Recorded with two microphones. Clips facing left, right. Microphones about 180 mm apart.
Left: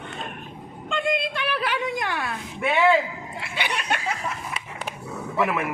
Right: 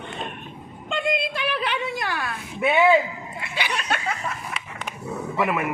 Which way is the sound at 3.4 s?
60° left (ahead or behind).